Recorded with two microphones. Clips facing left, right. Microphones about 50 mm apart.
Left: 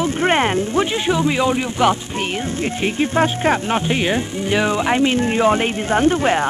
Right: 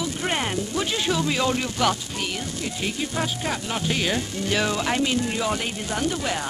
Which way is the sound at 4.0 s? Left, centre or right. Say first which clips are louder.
Left 6 dB; left.